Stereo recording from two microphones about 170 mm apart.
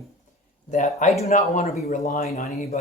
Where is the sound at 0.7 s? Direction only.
45° left (ahead or behind).